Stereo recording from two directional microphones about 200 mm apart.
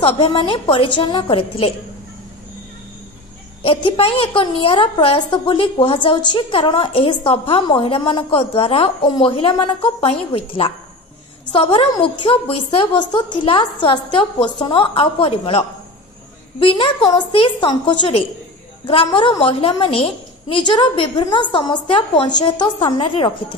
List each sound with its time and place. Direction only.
0.0 s a woman's voice: 25° left (ahead or behind)
3.6 s a woman's voice: 25° left (ahead or behind)